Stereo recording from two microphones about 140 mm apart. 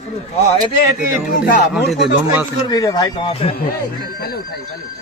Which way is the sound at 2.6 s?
25° left (ahead or behind).